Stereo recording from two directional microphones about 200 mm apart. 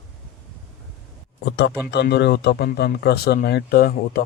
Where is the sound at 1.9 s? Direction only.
55° left (ahead or behind).